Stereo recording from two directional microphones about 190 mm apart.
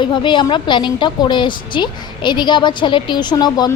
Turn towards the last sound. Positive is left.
turn(degrees=20)  # may be behind; listen again after turning